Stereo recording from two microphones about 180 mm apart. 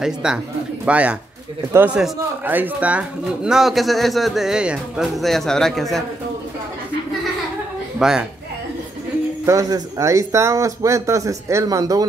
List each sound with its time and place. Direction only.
0.0 s speech: 5° right (ahead or behind)
8.0 s speech: 5° right (ahead or behind)
9.5 s speech: 15° right (ahead or behind)